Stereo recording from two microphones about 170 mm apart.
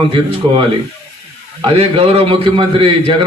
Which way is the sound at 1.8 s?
35° right (ahead or behind).